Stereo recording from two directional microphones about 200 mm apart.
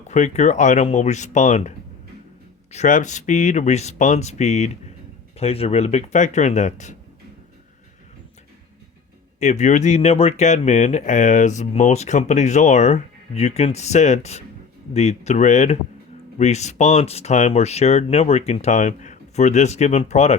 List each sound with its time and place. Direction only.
0.1 s speech: 35° left (ahead or behind)
2.7 s speech: 35° left (ahead or behind)
9.4 s speech: 35° left (ahead or behind)